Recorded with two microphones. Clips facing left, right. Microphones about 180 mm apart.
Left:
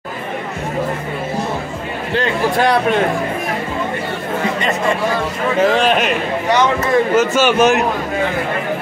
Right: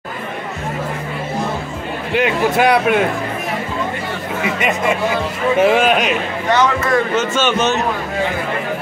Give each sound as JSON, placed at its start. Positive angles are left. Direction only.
{"t": 2.1, "sound": "a man's voice", "side_deg": -10}
{"t": 4.6, "sound": "a man's voice", "side_deg": -10}
{"t": 6.5, "sound": "a man's voice", "side_deg": 20}